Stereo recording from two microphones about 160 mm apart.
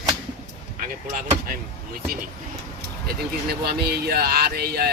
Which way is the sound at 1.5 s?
65° right (ahead or behind).